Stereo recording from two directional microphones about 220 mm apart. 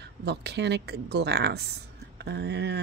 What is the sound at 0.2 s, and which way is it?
Speech, 50° right (ahead or behind).